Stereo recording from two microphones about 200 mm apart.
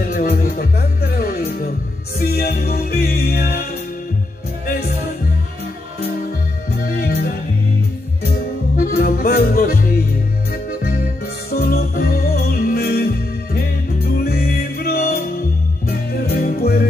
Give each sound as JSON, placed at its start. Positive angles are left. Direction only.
{"t": 0.1, "sound": "music", "side_deg": 45}
{"t": 7.0, "sound": "music", "side_deg": 50}
{"t": 8.7, "sound": "music", "side_deg": 50}
{"t": 14.0, "sound": "music", "side_deg": 50}